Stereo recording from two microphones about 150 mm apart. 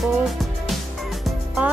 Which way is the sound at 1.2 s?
5° right (ahead or behind).